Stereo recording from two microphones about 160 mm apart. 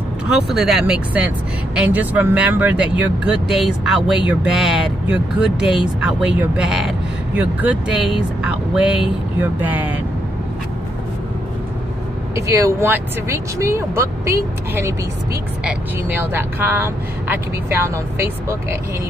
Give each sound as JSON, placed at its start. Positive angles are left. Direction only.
{"t": 0.3, "sound": "speech", "side_deg": 0}
{"t": 12.4, "sound": "speech", "side_deg": -20}